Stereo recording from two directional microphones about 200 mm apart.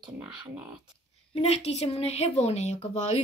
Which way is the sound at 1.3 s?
30° left (ahead or behind).